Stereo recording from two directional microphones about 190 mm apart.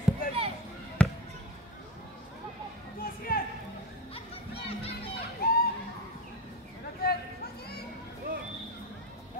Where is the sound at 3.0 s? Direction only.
50° left (ahead or behind).